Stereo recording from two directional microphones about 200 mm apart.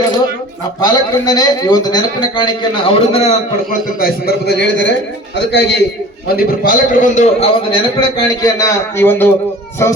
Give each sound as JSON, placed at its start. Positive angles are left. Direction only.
{"t": 0.8, "sound": "a man's voice", "side_deg": 20}
{"t": 4.0, "sound": "a man's voice", "side_deg": 55}
{"t": 6.2, "sound": "a man's voice", "side_deg": 50}